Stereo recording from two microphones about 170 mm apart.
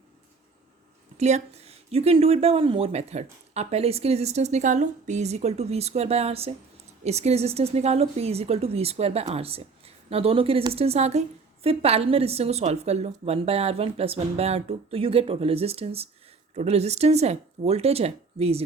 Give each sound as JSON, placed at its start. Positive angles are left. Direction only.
{"t": 1.2, "sound": "speech", "side_deg": -40}